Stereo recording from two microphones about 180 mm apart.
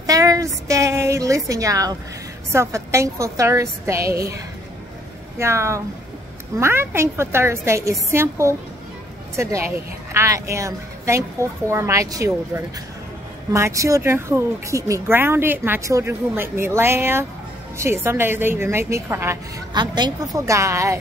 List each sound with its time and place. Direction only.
0.0 s a woman's voice: 20° right (ahead or behind)
5.4 s a woman's voice: 15° right (ahead or behind)
13.5 s a woman's voice: 15° right (ahead or behind)